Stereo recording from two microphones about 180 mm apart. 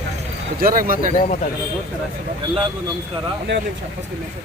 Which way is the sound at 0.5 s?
55° right (ahead or behind).